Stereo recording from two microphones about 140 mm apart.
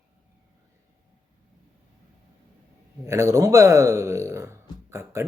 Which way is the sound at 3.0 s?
20° right (ahead or behind).